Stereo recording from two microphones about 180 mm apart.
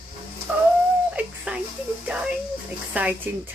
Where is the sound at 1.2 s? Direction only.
10° right (ahead or behind).